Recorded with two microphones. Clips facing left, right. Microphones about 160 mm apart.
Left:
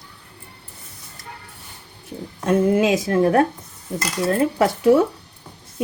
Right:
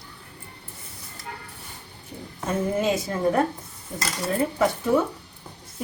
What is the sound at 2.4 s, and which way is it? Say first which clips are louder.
A woman's voice: left 7 dB; 80° left.